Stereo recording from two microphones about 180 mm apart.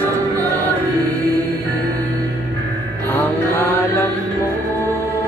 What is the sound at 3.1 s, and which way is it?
Mantra, 10° left (ahead or behind).